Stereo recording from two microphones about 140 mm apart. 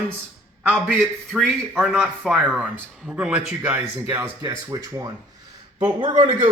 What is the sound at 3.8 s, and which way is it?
Speech, 20° right (ahead or behind).